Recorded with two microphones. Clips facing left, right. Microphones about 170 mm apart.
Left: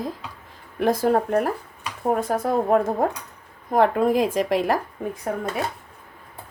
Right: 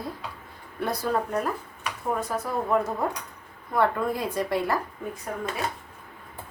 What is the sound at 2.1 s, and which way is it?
Speech, 55° left (ahead or behind).